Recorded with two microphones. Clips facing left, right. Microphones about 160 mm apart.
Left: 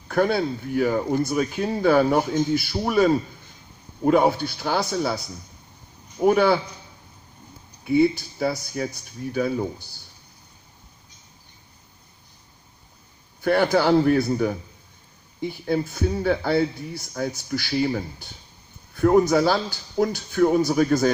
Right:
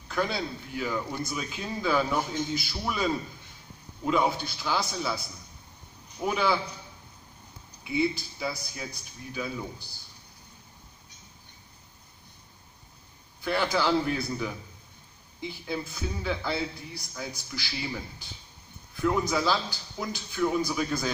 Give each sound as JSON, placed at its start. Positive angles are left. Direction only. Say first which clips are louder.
{"t": 0.1, "sound": "a man's voice", "louder": "left 9 dB", "side_deg": 55}
{"t": 6.2, "sound": "a man's voice", "louder": "left 9 dB", "side_deg": 55}
{"t": 7.8, "sound": "a man's voice", "louder": "left 9 dB", "side_deg": 55}
{"t": 13.4, "sound": "a man's voice", "louder": "left 8 dB", "side_deg": 55}
{"t": 18.9, "sound": "a man's voice", "louder": "left 9 dB", "side_deg": 65}